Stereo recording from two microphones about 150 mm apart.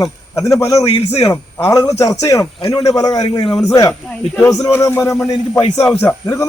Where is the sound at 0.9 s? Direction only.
40° left (ahead or behind).